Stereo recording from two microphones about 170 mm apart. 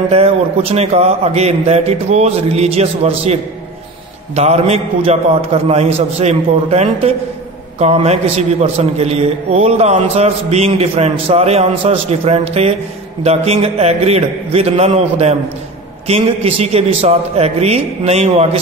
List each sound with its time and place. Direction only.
0.1 s a man's voice: 35° right (ahead or behind)
4.4 s a man's voice: 40° right (ahead or behind)